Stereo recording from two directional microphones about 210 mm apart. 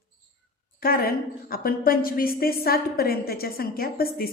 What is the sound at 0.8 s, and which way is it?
A woman's voice, 45° left (ahead or behind).